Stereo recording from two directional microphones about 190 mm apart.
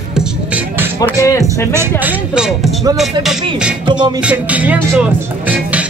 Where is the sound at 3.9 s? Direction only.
25° right (ahead or behind).